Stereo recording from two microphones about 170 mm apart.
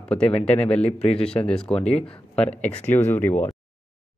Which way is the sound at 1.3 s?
5° left (ahead or behind).